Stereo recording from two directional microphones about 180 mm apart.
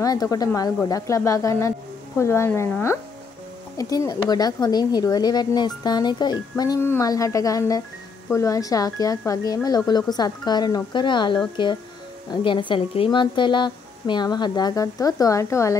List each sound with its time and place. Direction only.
0.0 s speech: 20° left (ahead or behind)